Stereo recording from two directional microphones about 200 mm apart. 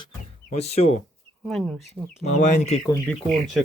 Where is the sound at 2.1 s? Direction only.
35° left (ahead or behind).